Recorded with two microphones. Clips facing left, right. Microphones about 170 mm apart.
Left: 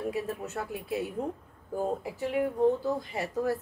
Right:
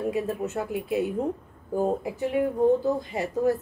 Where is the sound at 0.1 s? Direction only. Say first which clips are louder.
Right 6 dB; 20° right (ahead or behind).